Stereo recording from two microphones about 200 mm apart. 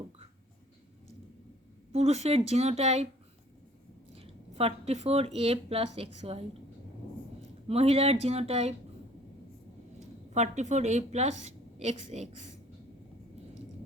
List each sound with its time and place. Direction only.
1.9 s a woman's voice: 30° right (ahead or behind)
4.1 s speech: 30° right (ahead or behind)
7.7 s a woman's voice: 30° right (ahead or behind)
10.3 s a woman's voice: 35° right (ahead or behind)